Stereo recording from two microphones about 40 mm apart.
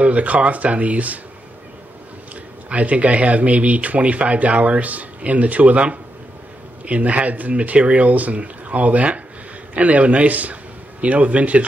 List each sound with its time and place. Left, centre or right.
0.0 s speech: right
2.7 s a man's voice: right